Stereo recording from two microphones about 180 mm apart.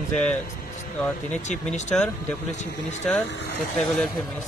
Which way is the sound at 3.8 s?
Centre (ahead or behind).